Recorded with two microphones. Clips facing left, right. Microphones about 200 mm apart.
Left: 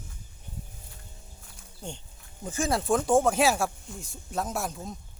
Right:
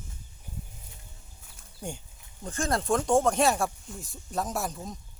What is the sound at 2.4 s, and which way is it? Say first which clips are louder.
Speech: left 1 dB; 5° left (ahead or behind).